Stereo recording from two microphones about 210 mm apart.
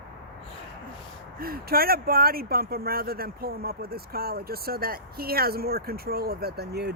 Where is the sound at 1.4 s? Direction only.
45° right (ahead or behind).